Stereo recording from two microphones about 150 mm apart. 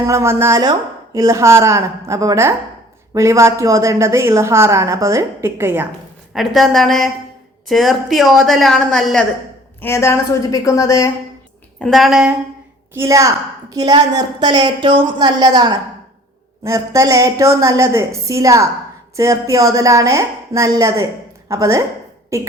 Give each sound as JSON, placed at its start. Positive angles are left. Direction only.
{"t": 0.0, "sound": "a woman's voice", "side_deg": -20}
{"t": 6.3, "sound": "a woman's voice", "side_deg": 0}
{"t": 9.8, "sound": "a woman's voice", "side_deg": 20}
{"t": 11.8, "sound": "a woman's voice", "side_deg": 0}
{"t": 12.9, "sound": "a woman's voice", "side_deg": -20}